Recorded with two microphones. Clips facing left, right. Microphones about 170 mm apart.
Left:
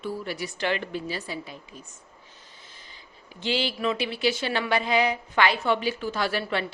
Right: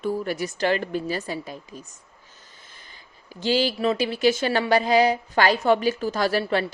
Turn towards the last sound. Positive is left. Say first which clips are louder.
# right 5 dB
turn(degrees=-40)  # may be behind; listen again after turning